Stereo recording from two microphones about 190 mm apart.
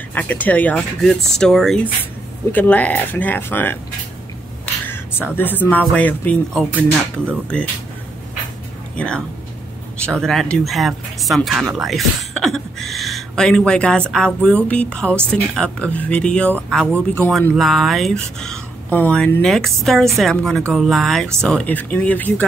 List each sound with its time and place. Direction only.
0.1 s speech: 10° left (ahead or behind)
4.8 s speech: 10° left (ahead or behind)
8.9 s speech: 5° left (ahead or behind)